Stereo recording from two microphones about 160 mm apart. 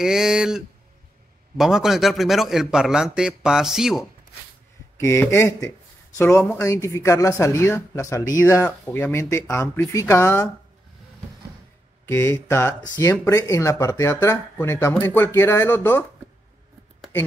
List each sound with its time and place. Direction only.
0.0 s a man's voice: 5° right (ahead or behind)
4.9 s speech: 20° left (ahead or behind)
12.1 s speech: 15° left (ahead or behind)